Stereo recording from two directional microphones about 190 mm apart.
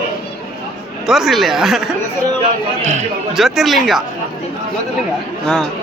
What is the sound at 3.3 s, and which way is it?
Speech, centre (ahead or behind).